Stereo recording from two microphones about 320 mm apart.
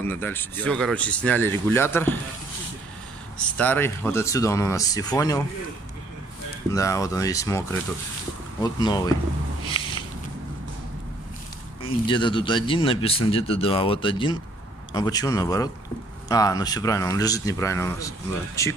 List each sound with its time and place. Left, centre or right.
0.0 s speech: centre
3.5 s speech: centre
6.7 s speech: centre
8.6 s speech: centre
9.7 s a sound: centre
11.8 s speech: centre